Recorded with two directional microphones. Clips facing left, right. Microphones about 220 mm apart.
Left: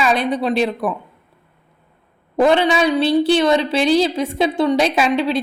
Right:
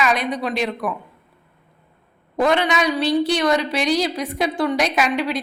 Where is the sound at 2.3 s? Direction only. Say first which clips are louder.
Left 4 dB; 30° left (ahead or behind).